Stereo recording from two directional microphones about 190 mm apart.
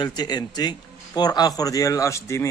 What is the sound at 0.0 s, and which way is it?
Speech, 20° left (ahead or behind).